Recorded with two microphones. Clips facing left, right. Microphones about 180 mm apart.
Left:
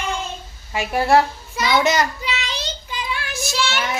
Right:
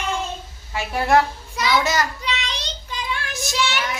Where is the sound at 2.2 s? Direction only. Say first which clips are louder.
Left 1 dB; 5° left (ahead or behind).